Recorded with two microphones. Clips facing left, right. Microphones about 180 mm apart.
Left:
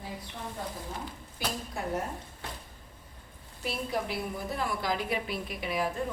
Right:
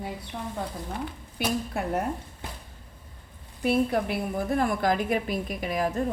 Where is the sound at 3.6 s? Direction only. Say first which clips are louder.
Right 9 dB; 55° right (ahead or behind).